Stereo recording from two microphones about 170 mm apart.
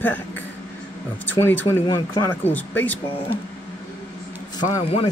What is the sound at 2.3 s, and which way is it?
Speech, 10° left (ahead or behind).